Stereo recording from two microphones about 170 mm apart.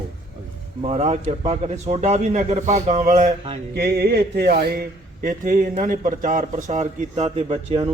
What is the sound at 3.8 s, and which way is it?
Speech, 65° right (ahead or behind).